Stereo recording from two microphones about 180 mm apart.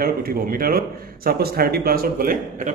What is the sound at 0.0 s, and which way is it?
A man's voice, 55° right (ahead or behind).